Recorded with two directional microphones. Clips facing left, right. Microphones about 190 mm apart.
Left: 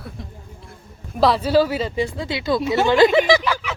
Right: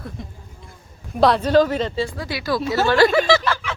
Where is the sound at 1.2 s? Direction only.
Centre (ahead or behind).